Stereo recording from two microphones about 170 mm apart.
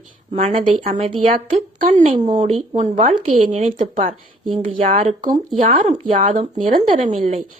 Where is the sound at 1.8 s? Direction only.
45° right (ahead or behind).